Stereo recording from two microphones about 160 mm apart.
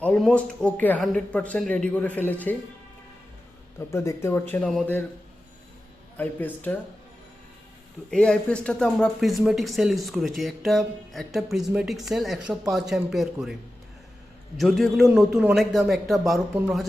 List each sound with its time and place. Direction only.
0.0 s speech: 5° left (ahead or behind)
3.8 s speech: 15° left (ahead or behind)
6.1 s speech: 10° left (ahead or behind)
8.1 s speech: 5° left (ahead or behind)
14.6 s speech: centre (ahead or behind)